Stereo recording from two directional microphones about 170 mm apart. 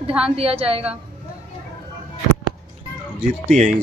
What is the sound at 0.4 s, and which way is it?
Speech, 35° right (ahead or behind).